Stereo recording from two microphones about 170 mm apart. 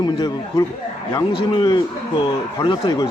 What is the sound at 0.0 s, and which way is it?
A man's voice, 25° left (ahead or behind).